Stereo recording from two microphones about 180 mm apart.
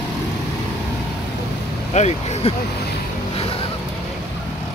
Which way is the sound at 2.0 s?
35° left (ahead or behind).